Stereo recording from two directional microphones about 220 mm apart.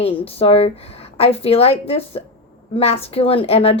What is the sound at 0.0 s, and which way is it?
A woman's voice, 25° left (ahead or behind).